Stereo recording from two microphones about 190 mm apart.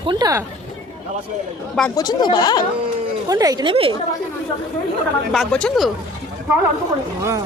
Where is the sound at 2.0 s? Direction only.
20° left (ahead or behind).